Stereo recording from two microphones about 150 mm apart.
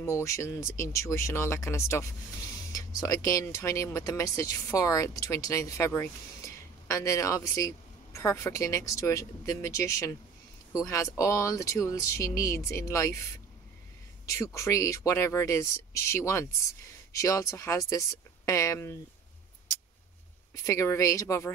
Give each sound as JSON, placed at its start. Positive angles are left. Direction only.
{"t": 0.0, "sound": "speech", "side_deg": 20}
{"t": 14.3, "sound": "speech", "side_deg": 20}
{"t": 20.6, "sound": "speech", "side_deg": 20}